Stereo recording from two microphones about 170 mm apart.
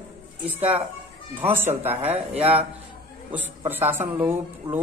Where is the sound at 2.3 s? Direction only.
35° right (ahead or behind).